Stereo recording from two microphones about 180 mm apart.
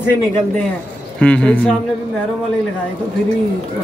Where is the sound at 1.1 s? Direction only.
5° left (ahead or behind).